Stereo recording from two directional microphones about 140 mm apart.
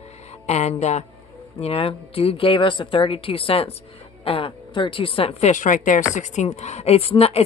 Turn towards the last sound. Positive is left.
turn(degrees=45)  # may be behind; listen again after turning